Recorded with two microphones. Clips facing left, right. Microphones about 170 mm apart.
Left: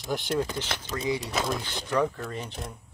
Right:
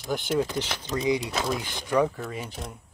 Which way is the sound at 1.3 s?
5° right (ahead or behind).